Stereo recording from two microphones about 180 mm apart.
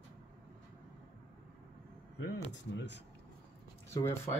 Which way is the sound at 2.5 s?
75° left (ahead or behind).